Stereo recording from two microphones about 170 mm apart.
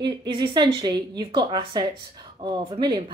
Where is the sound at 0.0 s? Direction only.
25° right (ahead or behind).